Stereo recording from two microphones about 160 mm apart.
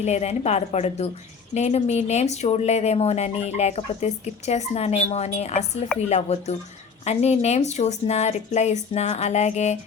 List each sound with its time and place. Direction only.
0.0 s speech: 45° left (ahead or behind)